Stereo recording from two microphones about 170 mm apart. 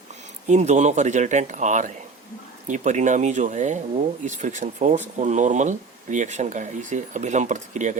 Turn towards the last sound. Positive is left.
turn(degrees=-45)  # may be behind; listen again after turning